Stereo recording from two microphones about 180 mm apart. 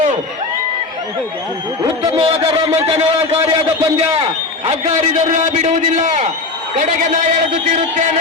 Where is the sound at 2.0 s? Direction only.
30° right (ahead or behind).